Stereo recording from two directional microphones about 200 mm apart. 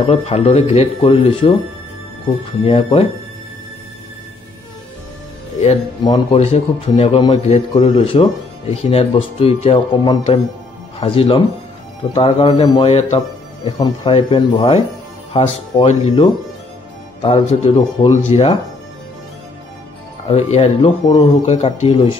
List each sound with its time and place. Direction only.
0.0 s a man's voice: 30° left (ahead or behind)
2.6 s a man's voice: 30° left (ahead or behind)
5.6 s a man's voice: 25° left (ahead or behind)
20.2 s speech: 30° left (ahead or behind)